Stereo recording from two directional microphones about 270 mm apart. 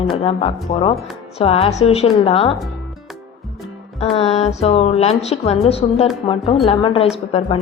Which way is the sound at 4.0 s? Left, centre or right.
Left.